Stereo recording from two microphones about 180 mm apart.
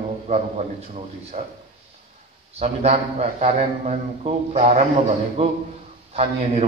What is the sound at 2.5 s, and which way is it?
A man's voice, 35° right (ahead or behind).